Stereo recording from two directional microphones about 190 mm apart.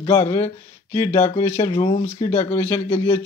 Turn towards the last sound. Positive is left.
turn(degrees=25)  # may be behind; listen again after turning